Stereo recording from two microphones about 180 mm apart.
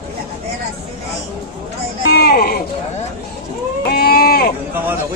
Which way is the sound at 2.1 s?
60° left (ahead or behind).